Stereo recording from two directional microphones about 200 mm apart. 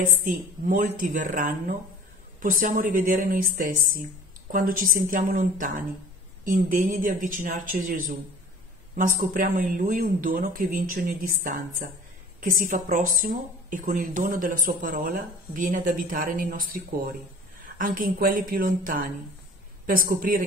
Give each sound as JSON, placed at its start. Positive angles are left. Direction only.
{"t": 0.0, "sound": "a man's voice", "side_deg": -40}